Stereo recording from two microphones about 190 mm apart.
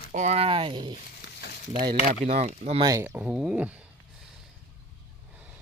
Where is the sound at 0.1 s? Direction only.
35° right (ahead or behind).